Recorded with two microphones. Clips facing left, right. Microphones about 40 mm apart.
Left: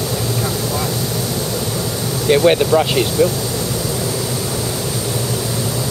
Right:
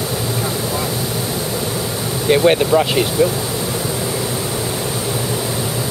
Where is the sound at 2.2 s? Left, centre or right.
Centre.